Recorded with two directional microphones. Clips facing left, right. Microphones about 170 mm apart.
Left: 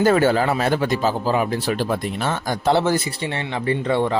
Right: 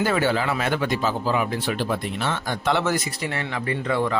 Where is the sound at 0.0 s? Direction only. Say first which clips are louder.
Left 5 dB; 45° left (ahead or behind).